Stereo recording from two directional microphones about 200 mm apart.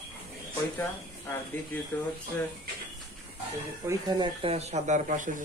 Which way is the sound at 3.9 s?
20° right (ahead or behind).